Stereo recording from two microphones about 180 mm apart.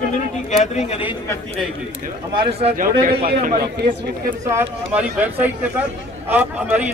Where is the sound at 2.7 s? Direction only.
50° right (ahead or behind).